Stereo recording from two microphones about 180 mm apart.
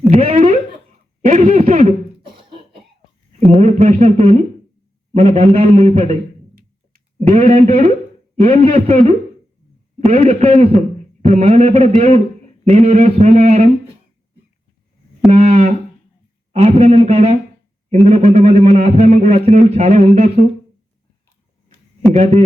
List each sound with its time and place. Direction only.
0.1 s a sound: 35° right (ahead or behind)
1.2 s speech: 40° right (ahead or behind)
2.2 s cough: 30° right (ahead or behind)
3.4 s speech: 35° right (ahead or behind)
7.2 s speech: 35° right (ahead or behind)
15.3 s a sound: 35° right (ahead or behind)
16.5 s speech: 35° right (ahead or behind)
22.1 s speech: 35° right (ahead or behind)